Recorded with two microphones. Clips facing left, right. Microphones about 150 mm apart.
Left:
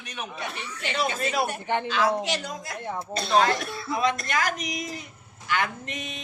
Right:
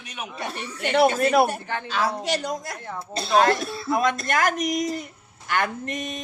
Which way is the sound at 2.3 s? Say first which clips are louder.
Right 4 dB; 45° right (ahead or behind).